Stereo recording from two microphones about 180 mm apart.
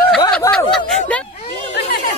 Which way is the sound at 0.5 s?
5° left (ahead or behind).